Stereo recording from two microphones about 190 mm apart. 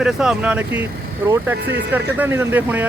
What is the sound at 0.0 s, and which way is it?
Speech, 5° right (ahead or behind).